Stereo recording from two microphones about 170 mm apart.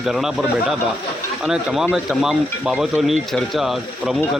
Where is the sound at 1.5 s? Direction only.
5° right (ahead or behind).